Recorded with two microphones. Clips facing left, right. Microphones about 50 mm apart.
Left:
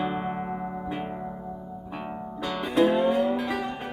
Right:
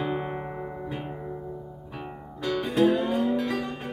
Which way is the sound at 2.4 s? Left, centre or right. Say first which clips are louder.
Even; centre.